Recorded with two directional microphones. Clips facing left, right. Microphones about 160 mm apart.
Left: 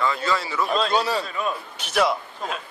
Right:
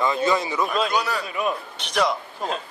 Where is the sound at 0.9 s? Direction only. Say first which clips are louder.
Left 2 dB; 25° left (ahead or behind).